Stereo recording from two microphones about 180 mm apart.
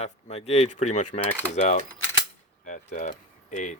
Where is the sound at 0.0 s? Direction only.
35° left (ahead or behind).